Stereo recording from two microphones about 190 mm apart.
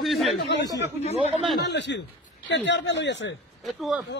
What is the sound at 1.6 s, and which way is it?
A man's voice, 70° left (ahead or behind).